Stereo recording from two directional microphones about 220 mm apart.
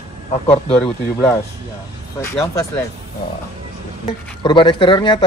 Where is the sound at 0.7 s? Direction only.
5° left (ahead or behind).